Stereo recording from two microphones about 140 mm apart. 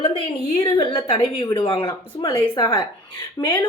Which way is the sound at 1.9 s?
25° left (ahead or behind).